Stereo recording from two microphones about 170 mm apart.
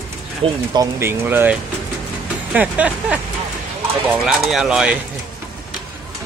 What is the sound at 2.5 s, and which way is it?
Vehicle, 10° right (ahead or behind).